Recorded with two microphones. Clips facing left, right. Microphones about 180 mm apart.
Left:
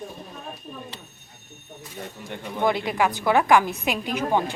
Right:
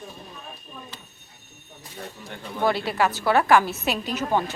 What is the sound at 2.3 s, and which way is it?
A woman's voice, 20° left (ahead or behind).